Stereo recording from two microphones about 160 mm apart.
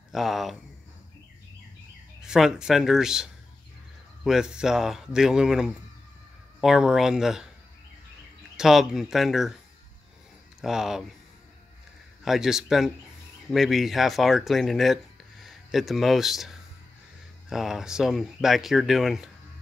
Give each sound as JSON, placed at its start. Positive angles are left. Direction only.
{"t": 0.1, "sound": "speech", "side_deg": 0}
{"t": 2.2, "sound": "speech", "side_deg": -5}
{"t": 8.5, "sound": "speech", "side_deg": 0}
{"t": 10.6, "sound": "speech", "side_deg": -5}
{"t": 12.3, "sound": "speech", "side_deg": -5}